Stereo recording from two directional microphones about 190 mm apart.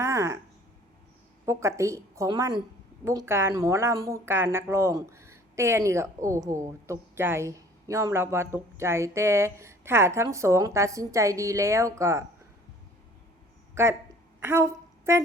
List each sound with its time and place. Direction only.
0.0 s a sound: 15° right (ahead or behind)
1.5 s speech: 15° right (ahead or behind)
14.4 s a woman's voice: 15° right (ahead or behind)